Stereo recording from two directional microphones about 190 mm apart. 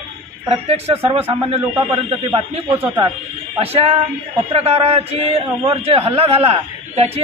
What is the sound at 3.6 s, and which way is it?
A man's voice, 30° right (ahead or behind).